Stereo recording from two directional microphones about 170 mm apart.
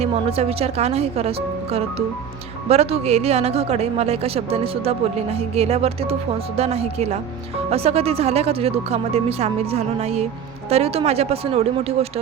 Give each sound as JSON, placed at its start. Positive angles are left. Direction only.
{"t": 0.0, "sound": "a woman's voice", "side_deg": -35}